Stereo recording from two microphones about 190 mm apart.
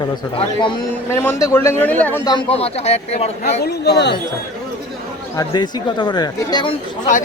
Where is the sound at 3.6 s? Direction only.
60° left (ahead or behind).